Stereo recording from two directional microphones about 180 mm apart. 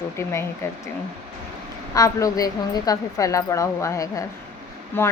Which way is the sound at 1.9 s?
20° left (ahead or behind).